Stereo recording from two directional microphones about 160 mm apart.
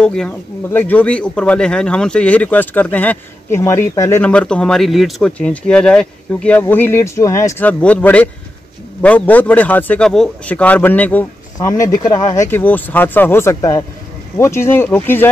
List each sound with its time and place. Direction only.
0.0 s speech: 5° left (ahead or behind)
4.2 s speech: 5° left (ahead or behind)
11.8 s speech: 20° left (ahead or behind)
12.4 s speech: 10° left (ahead or behind)